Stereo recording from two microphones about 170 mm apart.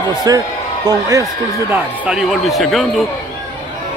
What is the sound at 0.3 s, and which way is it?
Speech, 20° right (ahead or behind).